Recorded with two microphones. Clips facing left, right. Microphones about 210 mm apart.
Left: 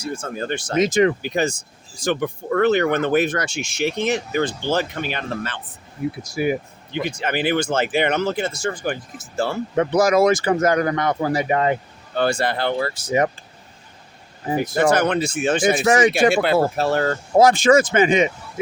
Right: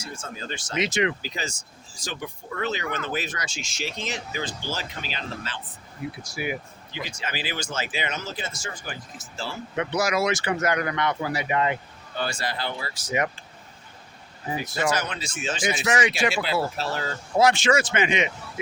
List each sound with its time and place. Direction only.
0.0 s speech: 60° left (ahead or behind)
6.4 s speech: 45° left (ahead or behind)
6.9 s speech: 60° left (ahead or behind)
9.7 s speech: 45° left (ahead or behind)
12.1 s speech: 60° left (ahead or behind)
13.1 s speech: 35° left (ahead or behind)
14.5 s speech: 55° left (ahead or behind)
15.9 s speech: 40° left (ahead or behind)
16.1 s speech: 55° left (ahead or behind)